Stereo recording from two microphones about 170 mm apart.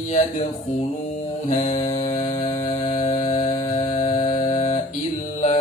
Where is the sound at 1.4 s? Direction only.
45° left (ahead or behind).